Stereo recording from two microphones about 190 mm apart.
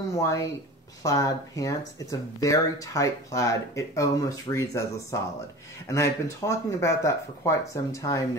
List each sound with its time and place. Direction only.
0.1 s speech: 15° left (ahead or behind)